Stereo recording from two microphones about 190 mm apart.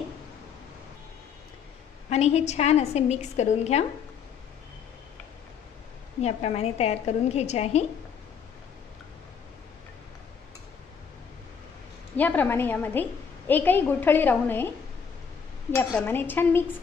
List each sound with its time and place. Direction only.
2.0 s a woman's voice: 35° left (ahead or behind)
6.2 s a woman's voice: 35° left (ahead or behind)
12.2 s a woman's voice: 10° left (ahead or behind)
16.1 s a woman's voice: 10° left (ahead or behind)